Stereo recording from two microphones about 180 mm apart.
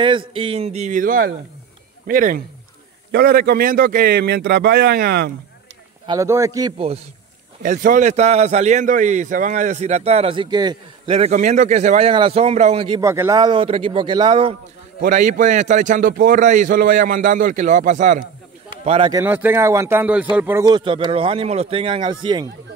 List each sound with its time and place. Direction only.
0.3 s a man's voice: 30° right (ahead or behind); by 5.3 s 60° right (ahead or behind)
6.0 s speech: 15° right (ahead or behind)
7.6 s a man's voice: 45° right (ahead or behind); by 13.0 s 30° right (ahead or behind)
13.0 s speech: 15° right (ahead or behind)
15.0 s a man's voice: 45° right (ahead or behind)
18.9 s a man's voice: 30° right (ahead or behind)
19.1 s a man's voice: 10° right (ahead or behind)
20.6 s speech: 25° right (ahead or behind)